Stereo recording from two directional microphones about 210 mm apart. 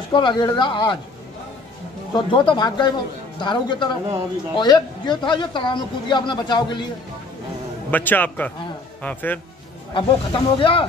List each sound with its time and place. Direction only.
0.1 s a man's voice: 20° left (ahead or behind)
2.1 s a man's voice: 20° left (ahead or behind)
7.9 s a man's voice: 10° left (ahead or behind)
9.9 s a man's voice: 25° left (ahead or behind)